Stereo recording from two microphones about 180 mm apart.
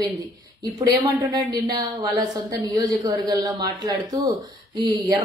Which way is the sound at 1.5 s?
25° right (ahead or behind).